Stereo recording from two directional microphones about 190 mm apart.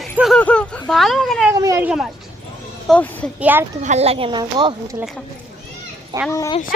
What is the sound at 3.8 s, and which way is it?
A child's voice, 35° right (ahead or behind).